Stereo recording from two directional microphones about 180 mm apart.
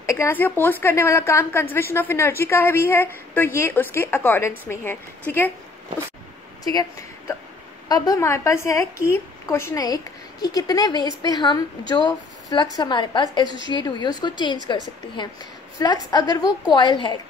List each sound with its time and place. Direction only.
0.0 s a woman's voice: 15° left (ahead or behind)
6.6 s a woman's voice: 20° left (ahead or behind)